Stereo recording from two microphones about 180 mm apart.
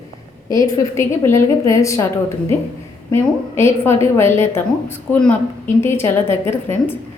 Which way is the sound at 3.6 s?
15° left (ahead or behind).